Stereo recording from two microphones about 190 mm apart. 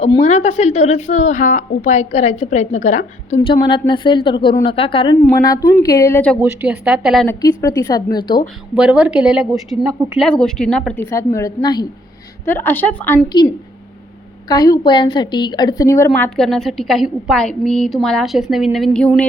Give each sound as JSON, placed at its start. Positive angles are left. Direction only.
{"t": 0.2, "sound": "a woman's voice", "side_deg": 40}
{"t": 3.4, "sound": "a woman's voice", "side_deg": 25}
{"t": 6.4, "sound": "a woman's voice", "side_deg": -10}
{"t": 7.3, "sound": "a woman's voice", "side_deg": 20}
{"t": 8.7, "sound": "a woman's voice", "side_deg": -5}
{"t": 13.2, "sound": "a woman's voice", "side_deg": 20}